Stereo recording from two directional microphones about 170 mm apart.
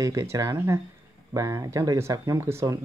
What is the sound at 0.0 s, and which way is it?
Speech, 20° right (ahead or behind).